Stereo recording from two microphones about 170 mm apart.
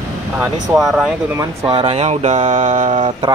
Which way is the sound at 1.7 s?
35° right (ahead or behind).